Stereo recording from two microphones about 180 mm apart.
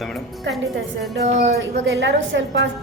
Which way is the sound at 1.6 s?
85° right.